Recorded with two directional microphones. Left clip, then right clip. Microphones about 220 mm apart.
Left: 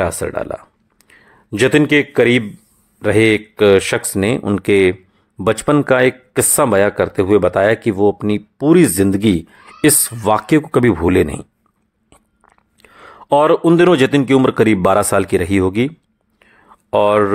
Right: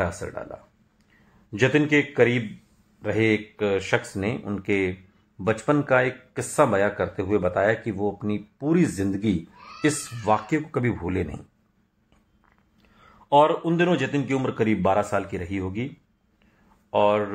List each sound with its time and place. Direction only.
0.0 s a man's voice: 40° left (ahead or behind)
12.9 s speech: 50° left (ahead or behind)
16.9 s speech: 50° left (ahead or behind)